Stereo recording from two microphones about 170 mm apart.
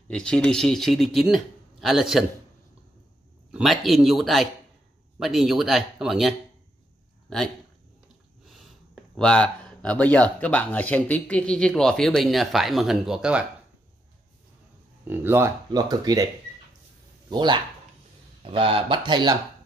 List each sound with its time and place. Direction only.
0.1 s speech: 5° left (ahead or behind)
3.5 s speech: centre (ahead or behind)
8.9 s speech: 5° left (ahead or behind)
15.0 s speech: 15° right (ahead or behind)
17.3 s speech: 25° right (ahead or behind)